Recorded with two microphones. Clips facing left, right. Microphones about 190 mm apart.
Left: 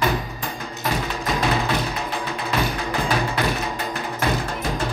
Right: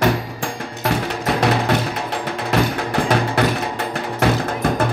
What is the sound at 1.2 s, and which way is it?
Music, 65° right (ahead or behind).